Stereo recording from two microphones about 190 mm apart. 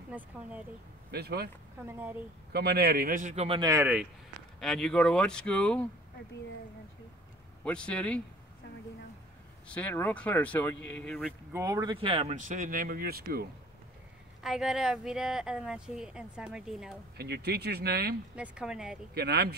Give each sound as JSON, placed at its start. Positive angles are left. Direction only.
{"t": 1.1, "sound": "speech", "side_deg": -55}
{"t": 1.9, "sound": "speech", "side_deg": -10}
{"t": 2.5, "sound": "speech", "side_deg": -55}
{"t": 3.4, "sound": "speech", "side_deg": -25}
{"t": 3.8, "sound": "speech", "side_deg": -5}
{"t": 7.6, "sound": "speech", "side_deg": 5}
{"t": 9.7, "sound": "speech", "side_deg": 10}
{"t": 11.5, "sound": "speech", "side_deg": -15}
{"t": 14.4, "sound": "speech", "side_deg": 0}
{"t": 17.2, "sound": "speech", "side_deg": -60}
{"t": 18.3, "sound": "speech", "side_deg": -5}
{"t": 19.1, "sound": "speech", "side_deg": -60}